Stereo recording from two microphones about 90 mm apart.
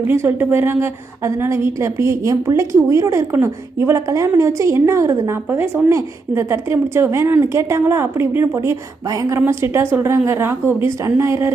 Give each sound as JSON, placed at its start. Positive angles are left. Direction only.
{"t": 0.1, "sound": "a woman's voice", "side_deg": -25}